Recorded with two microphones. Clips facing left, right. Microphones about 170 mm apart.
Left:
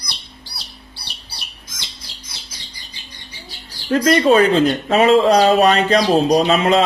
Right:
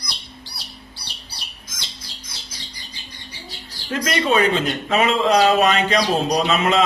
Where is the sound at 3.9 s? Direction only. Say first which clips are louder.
Left 7 dB; 35° left (ahead or behind).